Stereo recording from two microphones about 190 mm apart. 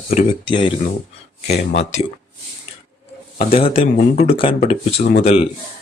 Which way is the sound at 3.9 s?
45° left (ahead or behind).